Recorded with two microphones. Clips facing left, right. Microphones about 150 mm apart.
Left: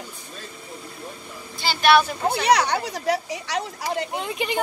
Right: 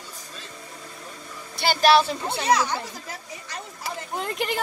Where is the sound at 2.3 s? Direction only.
70° left (ahead or behind).